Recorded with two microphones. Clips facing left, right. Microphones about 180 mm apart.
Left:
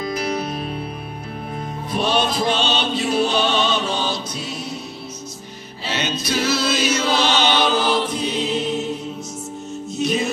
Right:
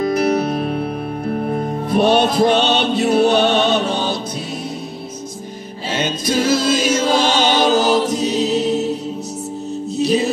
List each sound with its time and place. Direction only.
0.0 s music: 60° right (ahead or behind)
5.9 s choir: 45° right (ahead or behind)
9.9 s music: 35° right (ahead or behind)